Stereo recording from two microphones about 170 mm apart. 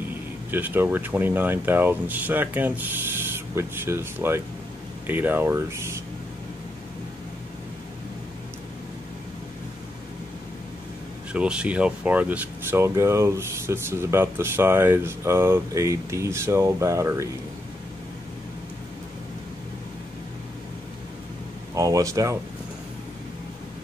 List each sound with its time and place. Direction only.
0.5 s speech: 10° right (ahead or behind)
11.3 s speech: 5° right (ahead or behind)
21.7 s speech: 20° right (ahead or behind)